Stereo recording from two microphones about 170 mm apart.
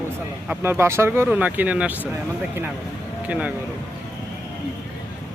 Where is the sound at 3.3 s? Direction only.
10° right (ahead or behind).